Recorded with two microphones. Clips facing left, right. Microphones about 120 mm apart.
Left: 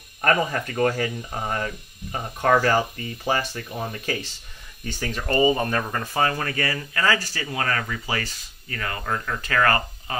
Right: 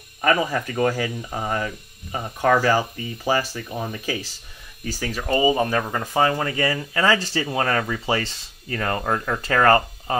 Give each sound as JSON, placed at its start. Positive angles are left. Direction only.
{"t": 0.2, "sound": "speech", "side_deg": -5}